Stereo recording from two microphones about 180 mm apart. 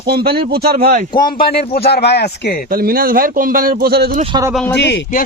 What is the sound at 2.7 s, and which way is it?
A man's voice, 55° right (ahead or behind).